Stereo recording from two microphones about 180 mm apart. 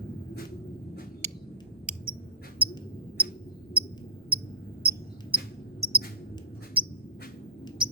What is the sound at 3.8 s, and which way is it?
Cricket, 10° right (ahead or behind).